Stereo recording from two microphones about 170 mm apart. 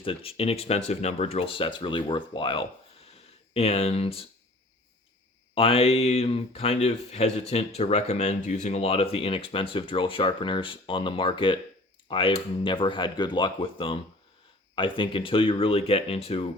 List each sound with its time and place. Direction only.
0.0 s speech: 35° left (ahead or behind)
5.5 s speech: 35° left (ahead or behind)